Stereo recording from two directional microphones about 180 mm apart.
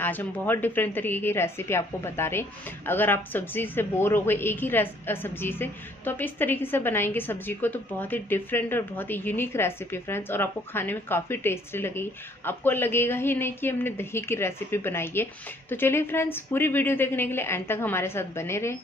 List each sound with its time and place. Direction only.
0.0 s a woman's voice: 10° left (ahead or behind)